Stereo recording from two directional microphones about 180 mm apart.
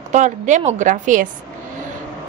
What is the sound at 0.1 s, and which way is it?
A woman's voice, 40° right (ahead or behind).